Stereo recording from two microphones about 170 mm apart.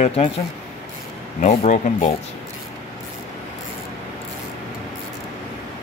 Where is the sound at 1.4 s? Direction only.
45° left (ahead or behind).